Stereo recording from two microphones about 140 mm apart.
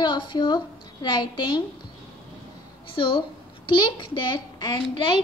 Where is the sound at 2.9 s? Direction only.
40° left (ahead or behind).